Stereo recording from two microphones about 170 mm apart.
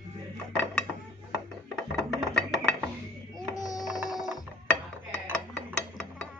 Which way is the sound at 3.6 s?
20° left (ahead or behind).